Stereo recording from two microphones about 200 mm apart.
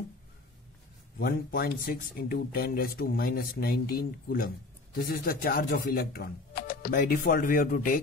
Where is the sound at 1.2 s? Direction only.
45° left (ahead or behind).